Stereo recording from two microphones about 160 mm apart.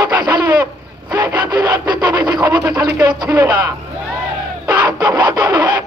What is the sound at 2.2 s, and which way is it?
Speech, 25° right (ahead or behind).